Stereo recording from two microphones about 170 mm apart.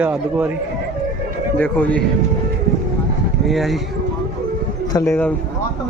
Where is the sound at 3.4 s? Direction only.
Centre (ahead or behind).